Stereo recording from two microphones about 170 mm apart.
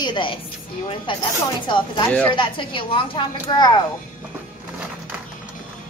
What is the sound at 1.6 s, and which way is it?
A woman's voice, 25° left (ahead or behind).